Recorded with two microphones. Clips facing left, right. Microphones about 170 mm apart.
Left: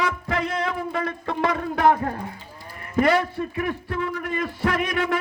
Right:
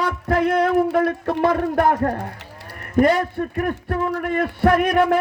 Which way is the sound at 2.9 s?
50° right (ahead or behind).